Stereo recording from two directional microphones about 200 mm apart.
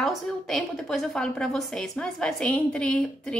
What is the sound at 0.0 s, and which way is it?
A woman's voice, centre (ahead or behind).